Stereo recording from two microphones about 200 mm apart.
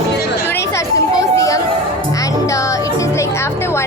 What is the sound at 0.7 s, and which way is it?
Children playing, 15° left (ahead or behind).